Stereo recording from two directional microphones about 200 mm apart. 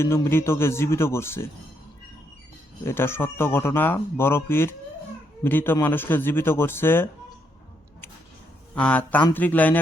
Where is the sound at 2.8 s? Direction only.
10° left (ahead or behind).